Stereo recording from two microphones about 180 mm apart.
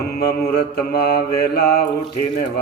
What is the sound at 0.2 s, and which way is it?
Mantra, 60° left (ahead or behind).